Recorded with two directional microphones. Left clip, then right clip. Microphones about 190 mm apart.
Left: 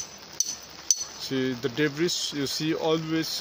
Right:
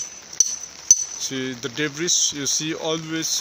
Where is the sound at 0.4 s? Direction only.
60° left (ahead or behind).